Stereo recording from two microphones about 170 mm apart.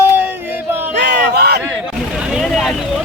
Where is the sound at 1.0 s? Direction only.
75° right (ahead or behind).